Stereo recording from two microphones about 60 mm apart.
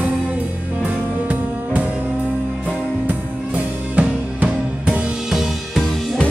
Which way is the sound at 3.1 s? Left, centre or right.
Right.